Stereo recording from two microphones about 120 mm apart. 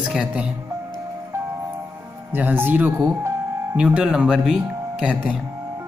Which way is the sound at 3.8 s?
10° right (ahead or behind).